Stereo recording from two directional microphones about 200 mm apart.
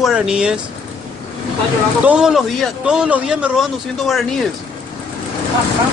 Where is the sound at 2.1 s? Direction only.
5° right (ahead or behind).